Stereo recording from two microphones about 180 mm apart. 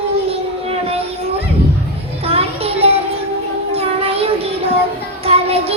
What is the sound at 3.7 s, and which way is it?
Child singing, 35° right (ahead or behind).